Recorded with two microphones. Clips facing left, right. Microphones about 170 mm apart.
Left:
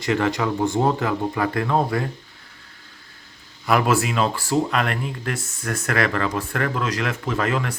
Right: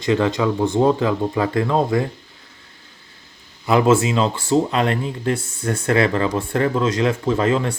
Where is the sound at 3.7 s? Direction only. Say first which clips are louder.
Right 4 dB; 25° right (ahead or behind).